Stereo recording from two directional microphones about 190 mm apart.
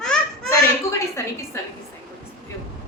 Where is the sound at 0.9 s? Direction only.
15° left (ahead or behind).